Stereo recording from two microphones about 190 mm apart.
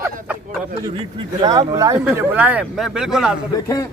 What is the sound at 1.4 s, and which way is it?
Speech, 20° right (ahead or behind).